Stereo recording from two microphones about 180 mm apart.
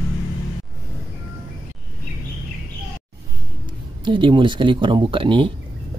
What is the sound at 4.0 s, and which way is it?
Speech, 25° right (ahead or behind).